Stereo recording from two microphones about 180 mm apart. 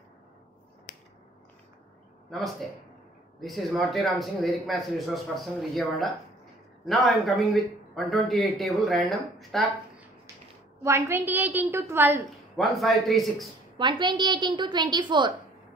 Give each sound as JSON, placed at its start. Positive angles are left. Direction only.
{"t": 0.9, "sound": "finger snapping", "side_deg": 50}
{"t": 3.3, "sound": "speech", "side_deg": 0}
{"t": 10.8, "sound": "a woman's voice", "side_deg": -15}
{"t": 12.5, "sound": "speech", "side_deg": 0}
{"t": 13.7, "sound": "a woman's voice", "side_deg": -25}